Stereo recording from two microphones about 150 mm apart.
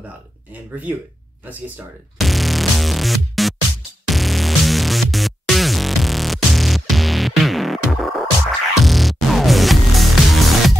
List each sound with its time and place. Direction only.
0.5 s speech: 10° right (ahead or behind)
2.1 s music: centre (ahead or behind)